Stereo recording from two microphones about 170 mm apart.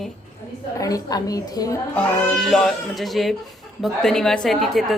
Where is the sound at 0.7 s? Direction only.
20° left (ahead or behind).